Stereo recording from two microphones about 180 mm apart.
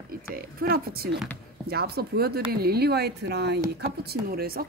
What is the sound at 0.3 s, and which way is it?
Speech, 55° right (ahead or behind).